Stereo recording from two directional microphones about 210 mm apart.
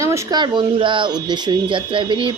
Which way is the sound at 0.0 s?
15° right (ahead or behind).